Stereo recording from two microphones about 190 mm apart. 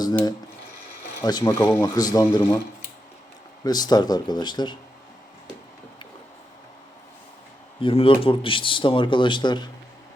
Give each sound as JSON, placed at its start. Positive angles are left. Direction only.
{"t": 1.2, "sound": "speech", "side_deg": 20}
{"t": 7.8, "sound": "speech", "side_deg": 30}